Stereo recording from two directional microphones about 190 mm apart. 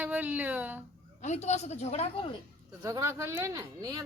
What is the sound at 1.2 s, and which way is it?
Speech, 35° left (ahead or behind).